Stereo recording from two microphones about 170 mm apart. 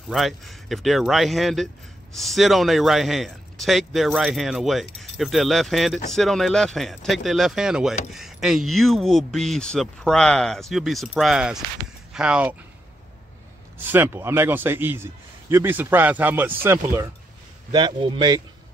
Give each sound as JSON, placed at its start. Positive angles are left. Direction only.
{"t": 0.1, "sound": "speech", "side_deg": 0}
{"t": 13.7, "sound": "speech", "side_deg": -10}
{"t": 17.6, "sound": "a man's voice", "side_deg": -25}